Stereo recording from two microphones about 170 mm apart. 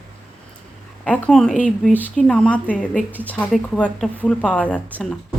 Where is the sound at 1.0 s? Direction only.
5° left (ahead or behind).